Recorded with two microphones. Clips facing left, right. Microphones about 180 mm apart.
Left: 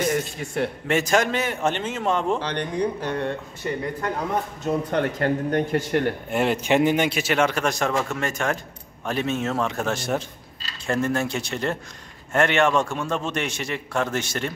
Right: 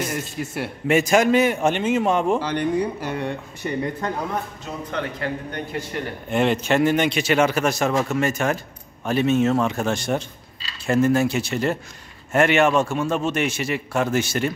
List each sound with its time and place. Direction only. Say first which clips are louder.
0.1 s speech: left 2 dB; 5° right (ahead or behind)
4.6 s speech: left 6 dB; 50° left (ahead or behind)
6.3 s a man's voice: right 2 dB; 10° left (ahead or behind); by 14.5 s 10° right (ahead or behind)